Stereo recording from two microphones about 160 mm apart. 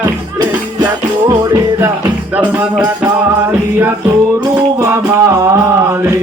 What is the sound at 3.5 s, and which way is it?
Music, 15° right (ahead or behind).